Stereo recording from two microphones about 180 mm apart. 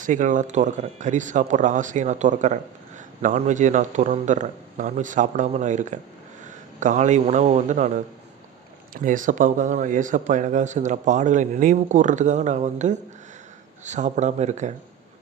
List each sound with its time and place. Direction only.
0.0 s speech: 45° right (ahead or behind)